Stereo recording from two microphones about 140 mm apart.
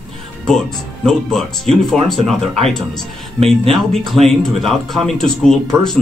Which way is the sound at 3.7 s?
Centre (ahead or behind).